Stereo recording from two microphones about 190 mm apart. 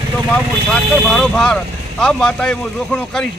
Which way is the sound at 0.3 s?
5° left (ahead or behind).